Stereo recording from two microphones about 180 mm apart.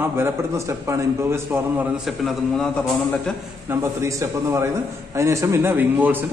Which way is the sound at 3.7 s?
15° right (ahead or behind).